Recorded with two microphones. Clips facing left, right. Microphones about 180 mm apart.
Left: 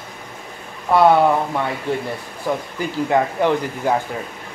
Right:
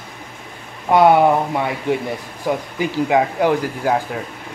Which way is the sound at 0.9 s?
15° right (ahead or behind).